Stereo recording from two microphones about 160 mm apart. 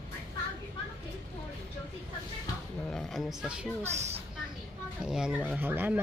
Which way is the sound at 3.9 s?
45° right (ahead or behind).